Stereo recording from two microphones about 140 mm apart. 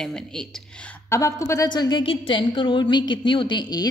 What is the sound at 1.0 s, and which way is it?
A woman's voice, 20° left (ahead or behind).